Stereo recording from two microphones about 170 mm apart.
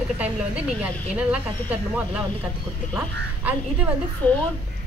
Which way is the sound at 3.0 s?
10° right (ahead or behind).